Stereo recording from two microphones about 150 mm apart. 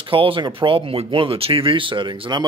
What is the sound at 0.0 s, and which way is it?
Speech, 35° right (ahead or behind).